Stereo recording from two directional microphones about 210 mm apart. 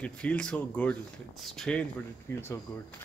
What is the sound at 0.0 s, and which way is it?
Speech, 5° left (ahead or behind).